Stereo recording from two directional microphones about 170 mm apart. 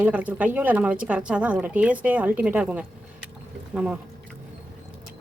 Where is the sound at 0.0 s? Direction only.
10° right (ahead or behind).